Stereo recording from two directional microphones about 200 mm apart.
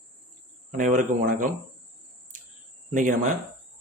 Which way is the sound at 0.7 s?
40° right (ahead or behind).